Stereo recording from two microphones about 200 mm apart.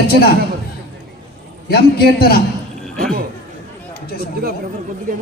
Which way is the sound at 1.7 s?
50° left (ahead or behind).